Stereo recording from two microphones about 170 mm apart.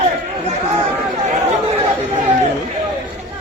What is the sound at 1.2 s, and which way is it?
Chatter, 40° right (ahead or behind).